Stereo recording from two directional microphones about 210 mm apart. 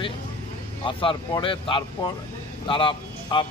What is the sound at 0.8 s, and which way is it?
A man's voice, 25° left (ahead or behind).